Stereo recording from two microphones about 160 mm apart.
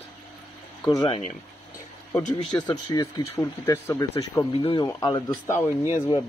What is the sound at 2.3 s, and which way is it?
Speech, 25° left (ahead or behind).